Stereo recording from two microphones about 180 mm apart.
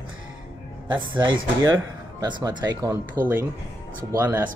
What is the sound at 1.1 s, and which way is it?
Speech, 25° right (ahead or behind).